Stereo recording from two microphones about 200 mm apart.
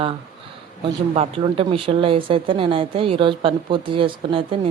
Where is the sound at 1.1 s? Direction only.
30° right (ahead or behind).